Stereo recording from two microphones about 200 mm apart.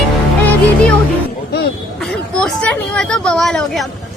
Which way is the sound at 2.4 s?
5° left (ahead or behind).